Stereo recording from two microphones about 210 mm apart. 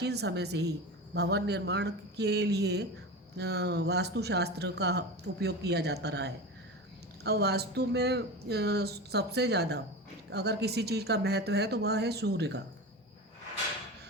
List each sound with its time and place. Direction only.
0.0 s speech: 50° right (ahead or behind)